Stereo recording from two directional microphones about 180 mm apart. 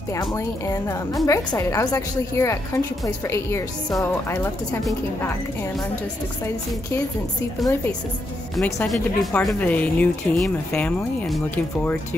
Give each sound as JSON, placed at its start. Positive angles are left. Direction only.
{"t": 0.1, "sound": "speech", "side_deg": 20}
{"t": 8.8, "sound": "speech", "side_deg": 0}